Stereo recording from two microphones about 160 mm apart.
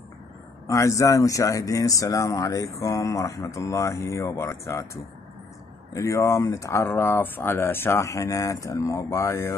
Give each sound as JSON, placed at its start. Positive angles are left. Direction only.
{"t": 0.7, "sound": "speech", "side_deg": 20}
{"t": 5.9, "sound": "speech", "side_deg": 20}